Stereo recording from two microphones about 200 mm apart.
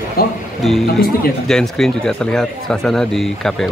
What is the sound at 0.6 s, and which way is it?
A man's voice, centre (ahead or behind).